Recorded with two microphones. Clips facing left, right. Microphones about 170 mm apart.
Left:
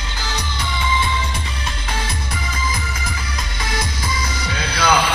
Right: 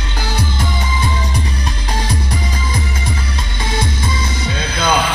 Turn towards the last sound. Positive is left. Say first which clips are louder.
# right 1 dB
turn(degrees=-25)  # may be behind; listen again after turning